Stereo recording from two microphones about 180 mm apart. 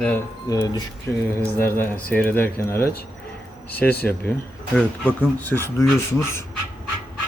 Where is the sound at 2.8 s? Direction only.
60° left (ahead or behind).